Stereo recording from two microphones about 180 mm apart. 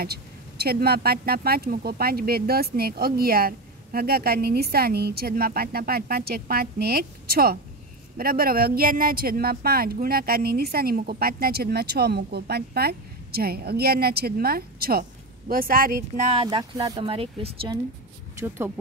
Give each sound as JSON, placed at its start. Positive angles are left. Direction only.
{"t": 0.0, "sound": "speech", "side_deg": -60}
{"t": 16.3, "sound": "speech", "side_deg": -30}
{"t": 17.0, "sound": "speech", "side_deg": -30}